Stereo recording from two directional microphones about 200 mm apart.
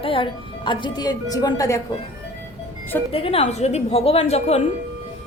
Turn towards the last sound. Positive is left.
turn(degrees=30)  # may be behind; listen again after turning